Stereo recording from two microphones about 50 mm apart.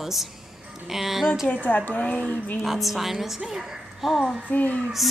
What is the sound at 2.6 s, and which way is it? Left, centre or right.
A woman's voice, centre.